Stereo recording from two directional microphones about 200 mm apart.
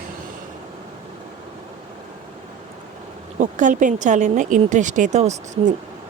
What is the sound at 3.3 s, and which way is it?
A woman's voice, 40° right (ahead or behind).